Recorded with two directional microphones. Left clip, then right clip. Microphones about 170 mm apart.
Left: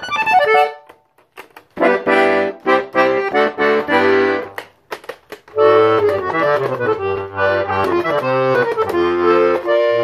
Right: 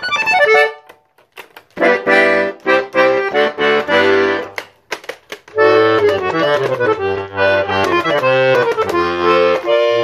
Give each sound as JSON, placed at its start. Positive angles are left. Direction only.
{"t": 0.0, "sound": "music", "side_deg": -10}
{"t": 1.8, "sound": "accordion", "side_deg": -10}
{"t": 5.6, "sound": "accordion", "side_deg": -25}